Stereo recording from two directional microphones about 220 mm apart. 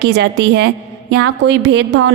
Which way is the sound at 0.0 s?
50° right (ahead or behind).